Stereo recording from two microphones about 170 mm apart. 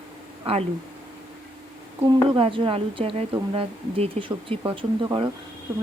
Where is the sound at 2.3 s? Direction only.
30° right (ahead or behind).